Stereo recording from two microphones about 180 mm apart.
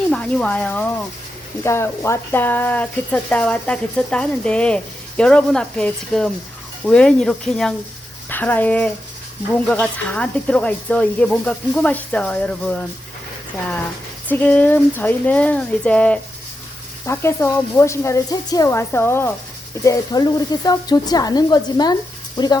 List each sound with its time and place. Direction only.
0.1 s speech: 5° left (ahead or behind)
14.3 s speech: 10° left (ahead or behind)